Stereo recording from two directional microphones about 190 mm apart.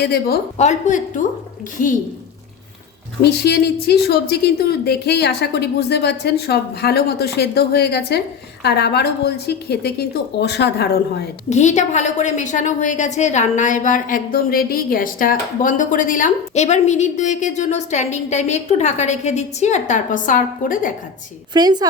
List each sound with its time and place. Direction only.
0.0 s a woman's voice: 55° left (ahead or behind)
0.5 s a woman's voice: 35° left (ahead or behind)
3.2 s a woman's voice: 60° left (ahead or behind)
11.4 s a woman's voice: 35° left (ahead or behind)
21.5 s a woman's voice: 20° right (ahead or behind)